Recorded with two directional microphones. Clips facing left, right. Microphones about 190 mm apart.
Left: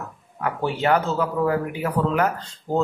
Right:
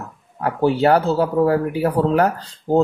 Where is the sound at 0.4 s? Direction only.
35° right (ahead or behind).